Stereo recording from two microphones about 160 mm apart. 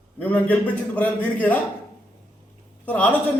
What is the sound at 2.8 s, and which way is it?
Speech, 10° left (ahead or behind).